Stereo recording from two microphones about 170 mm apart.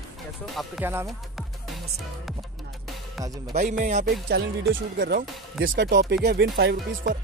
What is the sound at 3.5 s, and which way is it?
Speech, 45° right (ahead or behind).